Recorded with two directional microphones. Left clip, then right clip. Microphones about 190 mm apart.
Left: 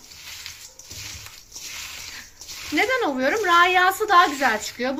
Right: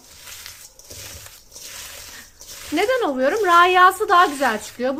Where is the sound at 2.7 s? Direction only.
40° right (ahead or behind).